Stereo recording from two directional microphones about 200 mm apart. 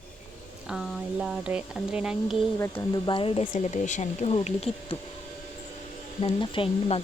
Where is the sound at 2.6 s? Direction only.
10° left (ahead or behind).